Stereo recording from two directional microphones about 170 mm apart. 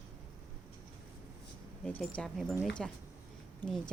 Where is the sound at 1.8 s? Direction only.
10° left (ahead or behind).